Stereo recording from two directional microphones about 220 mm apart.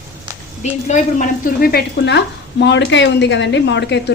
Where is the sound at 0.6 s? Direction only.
30° left (ahead or behind).